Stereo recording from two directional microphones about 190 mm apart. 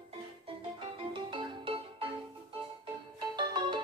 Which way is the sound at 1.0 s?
25° right (ahead or behind).